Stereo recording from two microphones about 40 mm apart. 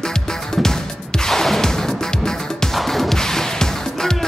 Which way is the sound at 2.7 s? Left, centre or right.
Centre.